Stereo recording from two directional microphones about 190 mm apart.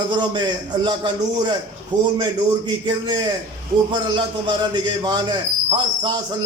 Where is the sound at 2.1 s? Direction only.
25° right (ahead or behind).